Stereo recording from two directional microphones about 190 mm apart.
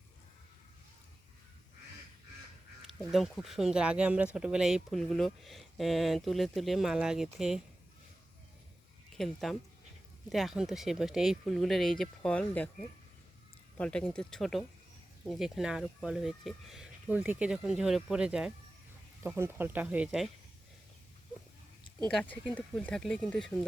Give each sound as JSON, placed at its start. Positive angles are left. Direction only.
{"t": 3.1, "sound": "speech", "side_deg": 0}
{"t": 9.1, "sound": "speech", "side_deg": 0}
{"t": 13.7, "sound": "speech", "side_deg": 5}
{"t": 22.0, "sound": "speech", "side_deg": 10}